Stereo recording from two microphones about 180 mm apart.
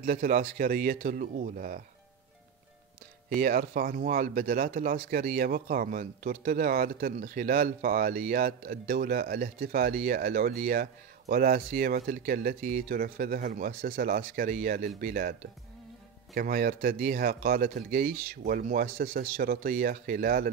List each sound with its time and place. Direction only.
0.0 s speech: 50° right (ahead or behind)
3.3 s speech: 55° right (ahead or behind)
16.3 s speech: 50° right (ahead or behind)